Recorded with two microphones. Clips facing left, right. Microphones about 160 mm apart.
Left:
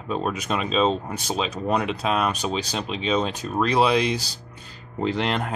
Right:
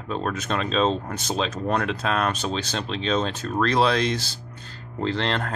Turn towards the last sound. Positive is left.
turn(degrees=10)  # may be behind; listen again after turning